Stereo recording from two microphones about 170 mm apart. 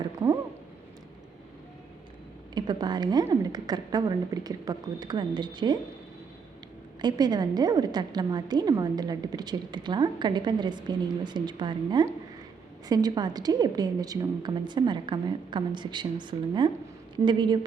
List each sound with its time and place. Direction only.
0.0 s a sound: 20° right (ahead or behind)
2.6 s a woman's voice: 25° right (ahead or behind)
7.0 s a woman's voice: 25° right (ahead or behind)